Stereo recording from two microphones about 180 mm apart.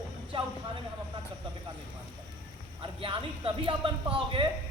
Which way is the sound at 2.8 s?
30° right (ahead or behind).